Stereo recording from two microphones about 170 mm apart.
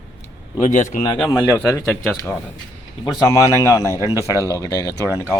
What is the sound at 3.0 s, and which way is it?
A man's voice, 25° left (ahead or behind).